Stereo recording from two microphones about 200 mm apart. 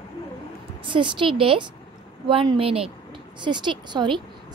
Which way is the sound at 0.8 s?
25° right (ahead or behind).